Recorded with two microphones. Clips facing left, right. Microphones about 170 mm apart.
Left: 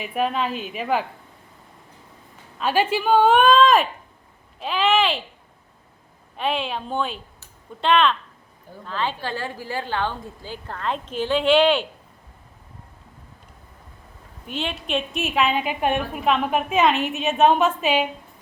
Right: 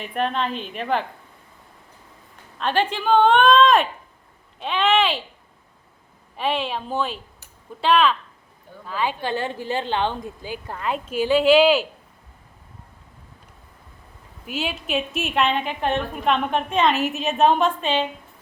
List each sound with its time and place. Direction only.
0.0 s a woman's voice: 5° left (ahead or behind)
2.6 s a woman's voice: 5° left (ahead or behind)
6.3 s a woman's voice: centre (ahead or behind)
14.4 s a woman's voice: 5° right (ahead or behind); by 18.1 s 10° left (ahead or behind)